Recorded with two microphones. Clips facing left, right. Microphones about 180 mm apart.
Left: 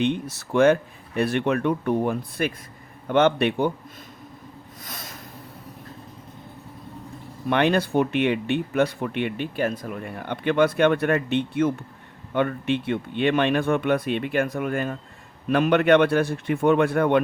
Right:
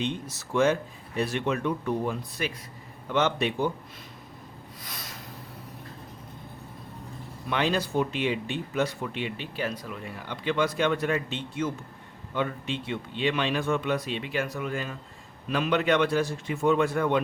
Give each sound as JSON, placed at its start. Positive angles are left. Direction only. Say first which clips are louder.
{"t": 0.0, "sound": "speech", "louder": "left 7 dB", "side_deg": 60}
{"t": 7.5, "sound": "speech", "louder": "left 6 dB", "side_deg": 60}